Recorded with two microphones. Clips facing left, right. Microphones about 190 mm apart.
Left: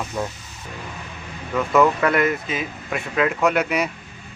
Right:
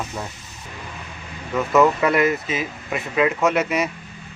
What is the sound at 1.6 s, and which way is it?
Speech, 5° right (ahead or behind).